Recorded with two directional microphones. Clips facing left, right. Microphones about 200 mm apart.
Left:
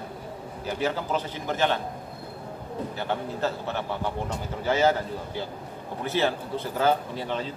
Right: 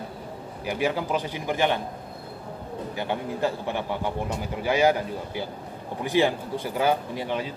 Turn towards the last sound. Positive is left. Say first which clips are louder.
# right 2 dB
turn(degrees=-15)  # may be behind; listen again after turning